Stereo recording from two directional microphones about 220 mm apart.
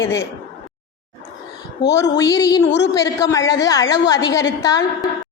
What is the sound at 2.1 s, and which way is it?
A woman's voice, 15° left (ahead or behind).